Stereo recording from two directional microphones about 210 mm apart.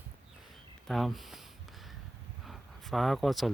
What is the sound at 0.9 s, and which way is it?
Speech, centre (ahead or behind).